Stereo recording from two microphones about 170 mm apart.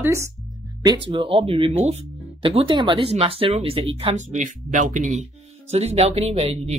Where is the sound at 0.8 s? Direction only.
25° right (ahead or behind).